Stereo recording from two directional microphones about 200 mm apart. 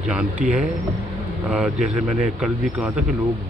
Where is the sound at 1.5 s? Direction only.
5° right (ahead or behind).